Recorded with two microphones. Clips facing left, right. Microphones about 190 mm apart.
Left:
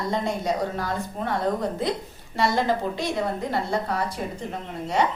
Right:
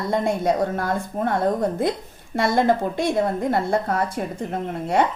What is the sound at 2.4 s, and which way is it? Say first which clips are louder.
A woman's voice: right 4 dB; 50° right (ahead or behind).